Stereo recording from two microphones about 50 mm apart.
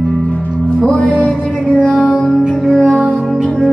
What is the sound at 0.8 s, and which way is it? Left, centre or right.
Music, centre.